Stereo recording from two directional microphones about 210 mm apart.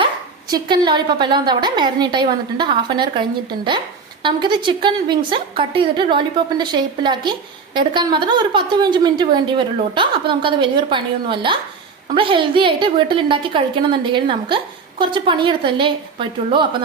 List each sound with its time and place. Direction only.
0.5 s a woman's voice: 20° right (ahead or behind)